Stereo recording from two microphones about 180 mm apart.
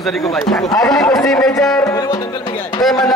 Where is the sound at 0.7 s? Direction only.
20° left (ahead or behind).